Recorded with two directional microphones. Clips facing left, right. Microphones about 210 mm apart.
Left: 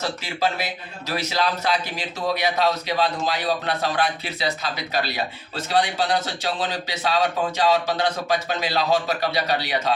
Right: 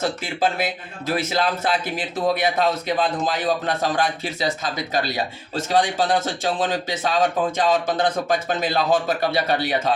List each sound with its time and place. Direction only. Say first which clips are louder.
0.0 s a man's voice: right 2 dB; 50° right (ahead or behind)